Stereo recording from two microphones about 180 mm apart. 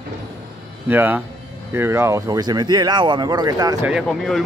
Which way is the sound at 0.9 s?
10° right (ahead or behind).